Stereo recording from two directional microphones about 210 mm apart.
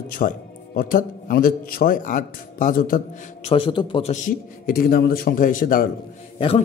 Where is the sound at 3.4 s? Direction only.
25° left (ahead or behind); by 5.8 s 40° left (ahead or behind).